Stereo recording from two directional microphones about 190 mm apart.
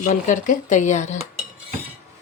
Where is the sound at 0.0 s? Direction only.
40° left (ahead or behind).